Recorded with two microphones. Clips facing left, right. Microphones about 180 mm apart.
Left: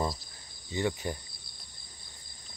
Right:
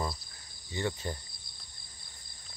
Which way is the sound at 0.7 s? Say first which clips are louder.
Left 3 dB; 15° left (ahead or behind).